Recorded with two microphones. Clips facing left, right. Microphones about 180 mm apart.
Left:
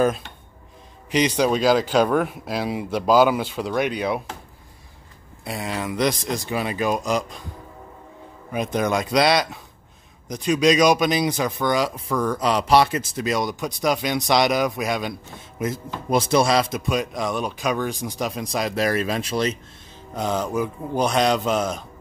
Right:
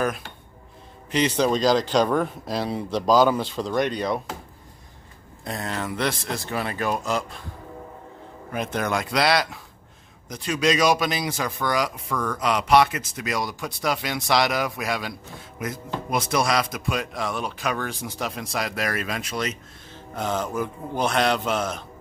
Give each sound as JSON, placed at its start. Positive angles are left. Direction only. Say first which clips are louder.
{"t": 1.1, "sound": "speech", "louder": "left 2 dB", "side_deg": 15}
{"t": 5.4, "sound": "speech", "louder": "left 2 dB", "side_deg": 10}
{"t": 8.5, "sound": "a man's voice", "louder": "left 3 dB", "side_deg": 15}
{"t": 20.2, "sound": "speech", "louder": "left 3 dB", "side_deg": 15}